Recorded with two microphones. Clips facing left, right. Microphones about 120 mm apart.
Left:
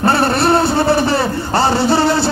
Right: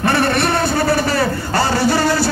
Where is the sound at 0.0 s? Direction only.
30° left (ahead or behind).